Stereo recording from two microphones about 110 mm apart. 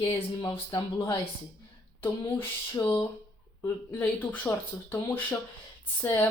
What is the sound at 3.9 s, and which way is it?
Speech, 15° left (ahead or behind).